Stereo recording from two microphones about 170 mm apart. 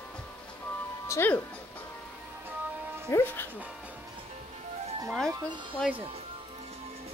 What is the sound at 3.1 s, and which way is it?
Speech, 10° left (ahead or behind).